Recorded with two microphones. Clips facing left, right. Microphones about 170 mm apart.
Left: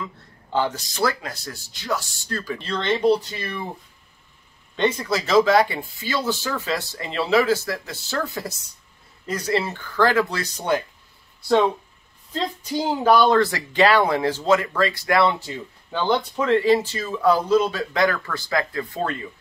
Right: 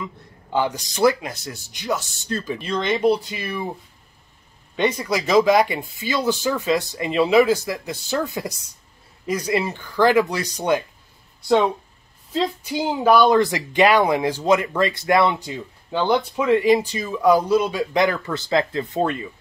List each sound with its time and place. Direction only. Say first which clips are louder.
0.0 s speech: right 1 dB; 10° right (ahead or behind)
4.7 s speech: right 1 dB; 10° right (ahead or behind)
12.3 s speech: right 3 dB; 10° right (ahead or behind)